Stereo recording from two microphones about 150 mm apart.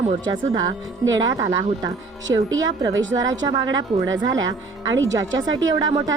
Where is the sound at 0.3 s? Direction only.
25° right (ahead or behind).